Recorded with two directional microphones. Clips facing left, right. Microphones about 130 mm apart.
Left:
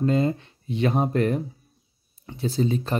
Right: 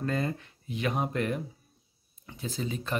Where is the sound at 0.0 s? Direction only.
25° left (ahead or behind).